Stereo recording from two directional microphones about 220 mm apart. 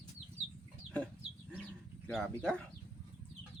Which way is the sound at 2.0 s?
5° left (ahead or behind).